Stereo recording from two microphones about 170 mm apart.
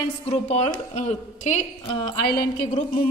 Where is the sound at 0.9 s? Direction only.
40° left (ahead or behind).